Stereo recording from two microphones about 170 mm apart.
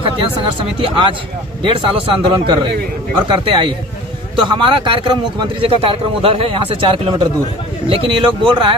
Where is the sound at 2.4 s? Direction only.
30° right (ahead or behind).